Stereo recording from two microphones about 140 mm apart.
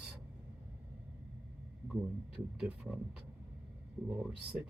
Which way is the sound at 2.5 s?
5° right (ahead or behind).